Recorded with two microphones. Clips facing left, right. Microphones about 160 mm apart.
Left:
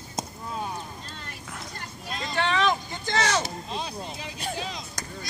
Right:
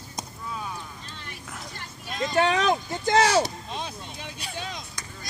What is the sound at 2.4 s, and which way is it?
Vehicle, 45° right (ahead or behind).